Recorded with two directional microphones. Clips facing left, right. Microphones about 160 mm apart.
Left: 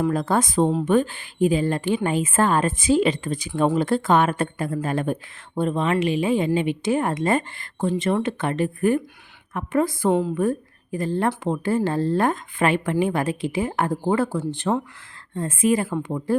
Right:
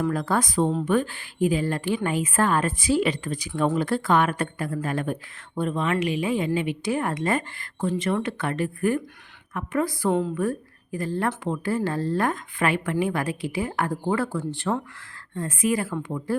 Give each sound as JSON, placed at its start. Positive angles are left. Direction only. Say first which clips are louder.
{"t": 0.0, "sound": "speech", "louder": "left 3 dB", "side_deg": 25}